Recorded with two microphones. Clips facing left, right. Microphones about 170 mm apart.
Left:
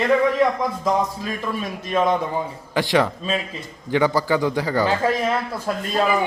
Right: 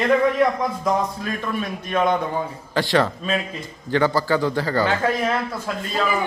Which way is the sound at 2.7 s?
15° left (ahead or behind).